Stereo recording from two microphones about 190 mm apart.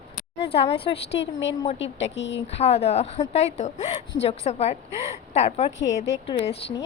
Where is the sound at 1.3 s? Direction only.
80° left.